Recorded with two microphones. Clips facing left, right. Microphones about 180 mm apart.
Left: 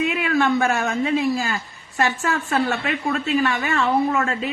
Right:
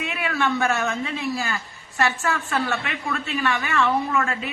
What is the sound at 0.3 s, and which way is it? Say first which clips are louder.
A woman's voice: left 2 dB; 40° left (ahead or behind).